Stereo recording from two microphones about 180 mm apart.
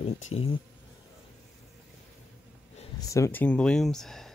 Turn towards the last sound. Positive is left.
turn(degrees=0)  # may be behind; listen again after turning